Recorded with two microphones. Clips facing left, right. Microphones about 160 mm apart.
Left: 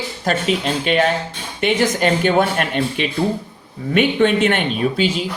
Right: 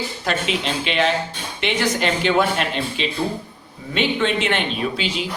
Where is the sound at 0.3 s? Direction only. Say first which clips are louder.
Left 5 dB; 45° left (ahead or behind).